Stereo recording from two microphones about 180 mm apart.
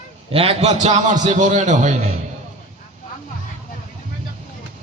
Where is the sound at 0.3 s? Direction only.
30° right (ahead or behind).